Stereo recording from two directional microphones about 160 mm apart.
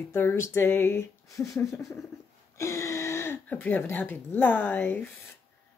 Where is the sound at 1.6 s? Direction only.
20° left (ahead or behind).